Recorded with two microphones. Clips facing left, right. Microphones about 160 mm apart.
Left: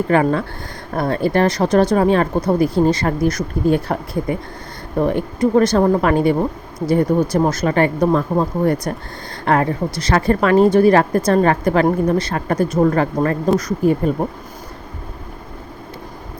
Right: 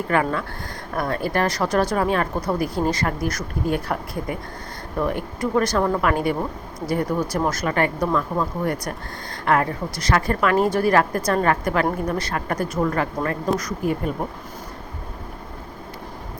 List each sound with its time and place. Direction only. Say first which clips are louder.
0.1 s speech: left 5 dB; 30° left (ahead or behind)
12.8 s speech: left 7 dB; 35° left (ahead or behind)